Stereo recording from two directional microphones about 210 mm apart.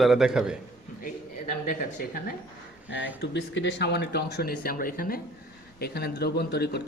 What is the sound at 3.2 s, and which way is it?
Speech, 55° left (ahead or behind).